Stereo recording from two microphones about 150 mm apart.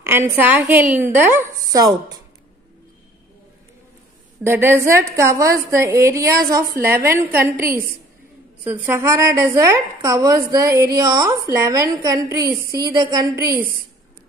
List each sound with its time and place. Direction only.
0.3 s a woman's voice: 15° right (ahead or behind)
1.5 s a woman's voice: 25° right (ahead or behind)
4.4 s a woman's voice: 15° right (ahead or behind)